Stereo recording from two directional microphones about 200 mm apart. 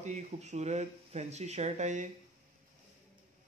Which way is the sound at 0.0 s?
35° right (ahead or behind).